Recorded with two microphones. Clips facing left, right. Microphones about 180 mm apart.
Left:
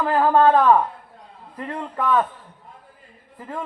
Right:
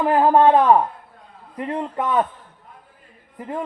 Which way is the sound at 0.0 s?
20° right (ahead or behind).